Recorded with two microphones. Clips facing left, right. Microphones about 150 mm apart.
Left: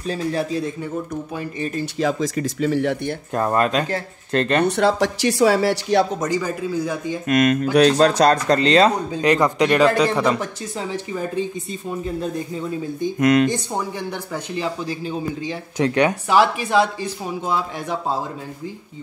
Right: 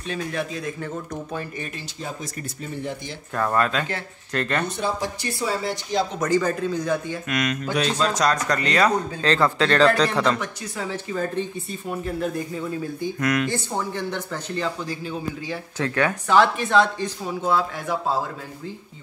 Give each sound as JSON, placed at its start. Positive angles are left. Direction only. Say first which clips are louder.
{"t": 0.0, "sound": "a man's voice", "louder": "left 5 dB", "side_deg": 35}
{"t": 0.7, "sound": "speech", "louder": "left 4 dB", "side_deg": 15}
{"t": 2.0, "sound": "speech", "louder": "left 12 dB", "side_deg": 90}
{"t": 3.3, "sound": "speech", "louder": "left 3 dB", "side_deg": 25}
{"t": 4.6, "sound": "speech", "louder": "left 8 dB", "side_deg": 75}
{"t": 6.1, "sound": "speech", "louder": "right 1 dB", "side_deg": 15}
{"t": 7.2, "sound": "speech", "louder": "left 10 dB", "side_deg": 50}
{"t": 7.7, "sound": "speech", "louder": "left 9 dB", "side_deg": 60}
{"t": 8.5, "sound": "speech", "louder": "left 6 dB", "side_deg": 25}
{"t": 13.7, "sound": "speech", "louder": "left 1 dB", "side_deg": 10}